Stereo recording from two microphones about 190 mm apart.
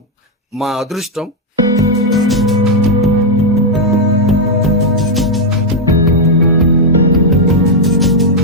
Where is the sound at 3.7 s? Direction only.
Centre (ahead or behind).